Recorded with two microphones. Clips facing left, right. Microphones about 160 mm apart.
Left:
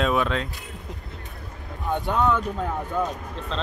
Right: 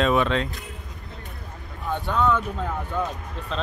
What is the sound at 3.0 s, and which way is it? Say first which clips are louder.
Speech: left 2 dB; 5° right (ahead or behind).